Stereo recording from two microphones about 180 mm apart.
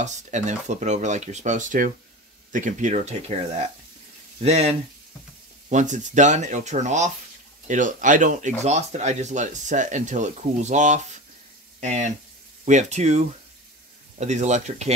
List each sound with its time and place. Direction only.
0.0 s speech: 40° right (ahead or behind)